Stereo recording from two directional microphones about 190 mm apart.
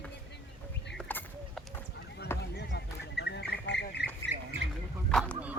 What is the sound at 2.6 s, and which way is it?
Duck, 60° left (ahead or behind).